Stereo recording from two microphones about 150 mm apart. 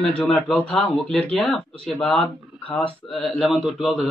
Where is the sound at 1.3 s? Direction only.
5° left (ahead or behind).